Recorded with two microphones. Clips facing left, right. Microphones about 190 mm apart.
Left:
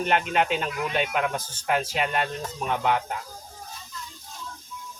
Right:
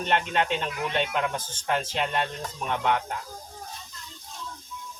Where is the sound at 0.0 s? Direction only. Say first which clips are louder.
Left 2 dB; 5° left (ahead or behind).